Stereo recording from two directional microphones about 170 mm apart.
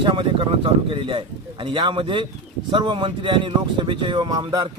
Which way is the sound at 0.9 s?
30° right (ahead or behind).